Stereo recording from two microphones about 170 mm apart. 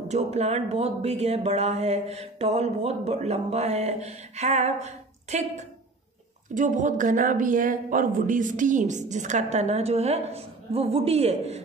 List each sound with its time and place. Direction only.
0.1 s speech: 40° right (ahead or behind)